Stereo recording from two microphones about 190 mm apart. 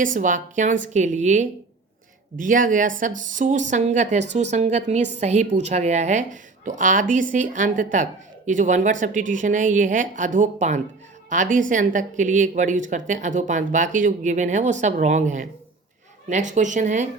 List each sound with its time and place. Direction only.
0.0 s a woman's voice: 45° right (ahead or behind)